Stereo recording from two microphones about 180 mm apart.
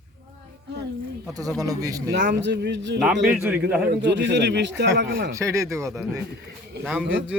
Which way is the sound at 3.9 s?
75° right (ahead or behind).